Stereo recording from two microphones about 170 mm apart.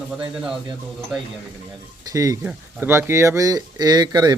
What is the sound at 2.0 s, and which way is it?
Speech, 20° right (ahead or behind).